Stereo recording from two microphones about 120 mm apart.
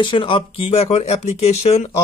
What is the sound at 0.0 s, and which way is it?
Speech, 45° left (ahead or behind).